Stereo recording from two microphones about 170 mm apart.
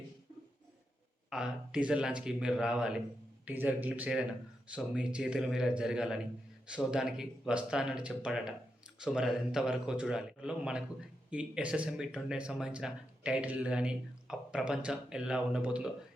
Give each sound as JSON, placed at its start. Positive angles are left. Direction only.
{"t": 1.3, "sound": "speech", "side_deg": -5}